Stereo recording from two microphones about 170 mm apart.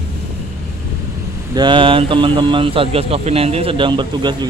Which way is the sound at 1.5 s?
30° right (ahead or behind).